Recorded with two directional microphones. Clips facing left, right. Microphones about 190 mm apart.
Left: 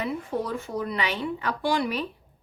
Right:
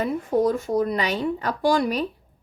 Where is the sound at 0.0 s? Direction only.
40° right (ahead or behind).